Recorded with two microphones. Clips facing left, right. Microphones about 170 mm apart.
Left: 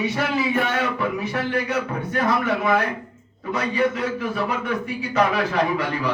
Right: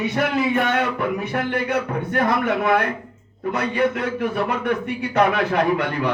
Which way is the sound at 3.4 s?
60° right (ahead or behind).